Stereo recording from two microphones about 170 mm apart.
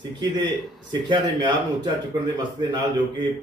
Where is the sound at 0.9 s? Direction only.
25° right (ahead or behind).